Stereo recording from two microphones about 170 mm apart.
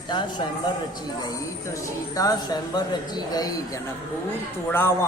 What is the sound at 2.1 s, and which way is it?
A man's voice, 20° left (ahead or behind).